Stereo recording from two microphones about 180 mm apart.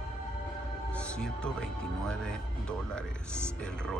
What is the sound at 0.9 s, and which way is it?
Music, 5° left (ahead or behind).